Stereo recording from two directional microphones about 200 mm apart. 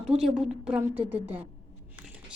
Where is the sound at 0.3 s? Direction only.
5° right (ahead or behind).